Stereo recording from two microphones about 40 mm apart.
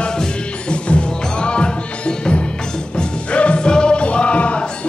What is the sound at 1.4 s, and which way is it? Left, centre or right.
Music, left.